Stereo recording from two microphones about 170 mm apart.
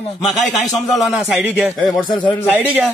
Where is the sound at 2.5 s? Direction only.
10° right (ahead or behind).